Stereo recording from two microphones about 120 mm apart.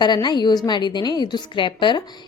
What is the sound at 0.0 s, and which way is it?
A woman's voice, 40° left (ahead or behind).